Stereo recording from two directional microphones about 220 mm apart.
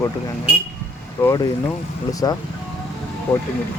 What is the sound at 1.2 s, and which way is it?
Speech, 15° left (ahead or behind).